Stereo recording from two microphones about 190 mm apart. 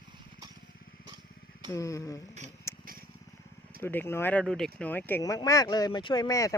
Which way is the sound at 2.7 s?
15° left (ahead or behind).